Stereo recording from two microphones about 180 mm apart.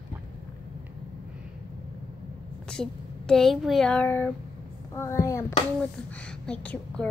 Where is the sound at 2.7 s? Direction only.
5° left (ahead or behind).